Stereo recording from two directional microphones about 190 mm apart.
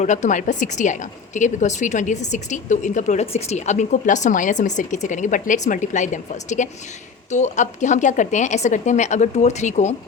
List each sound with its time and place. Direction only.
0.0 s a woman's voice: 40° left (ahead or behind)